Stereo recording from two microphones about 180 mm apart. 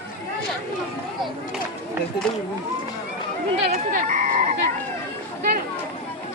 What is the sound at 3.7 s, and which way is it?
Frog, 45° right (ahead or behind).